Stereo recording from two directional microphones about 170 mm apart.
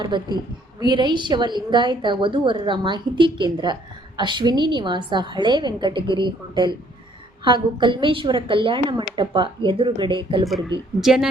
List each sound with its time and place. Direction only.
0.0 s a woman's voice: 25° right (ahead or behind)
11.0 s a woman's voice: centre (ahead or behind)